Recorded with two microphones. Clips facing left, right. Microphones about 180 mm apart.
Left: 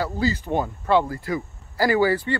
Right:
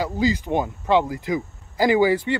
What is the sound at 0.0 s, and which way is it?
Speech, 15° right (ahead or behind).